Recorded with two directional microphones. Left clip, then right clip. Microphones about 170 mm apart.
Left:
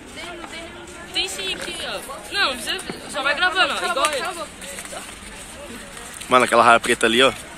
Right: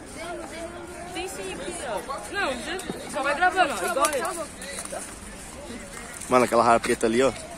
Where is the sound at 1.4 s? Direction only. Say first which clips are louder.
Left 6 dB; 55° right (ahead or behind).